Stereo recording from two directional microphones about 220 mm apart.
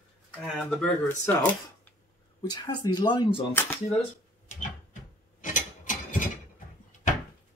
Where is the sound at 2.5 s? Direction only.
20° left (ahead or behind).